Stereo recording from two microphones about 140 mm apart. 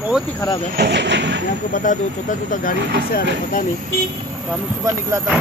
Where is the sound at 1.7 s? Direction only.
70° left (ahead or behind).